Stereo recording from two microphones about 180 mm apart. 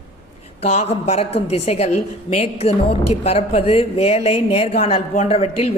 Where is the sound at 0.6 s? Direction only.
35° left (ahead or behind).